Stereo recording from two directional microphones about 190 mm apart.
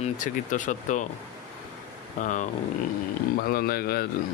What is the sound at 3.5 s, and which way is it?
Speech, 55° left (ahead or behind).